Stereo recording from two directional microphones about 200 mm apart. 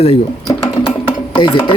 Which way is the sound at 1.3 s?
25° left (ahead or behind).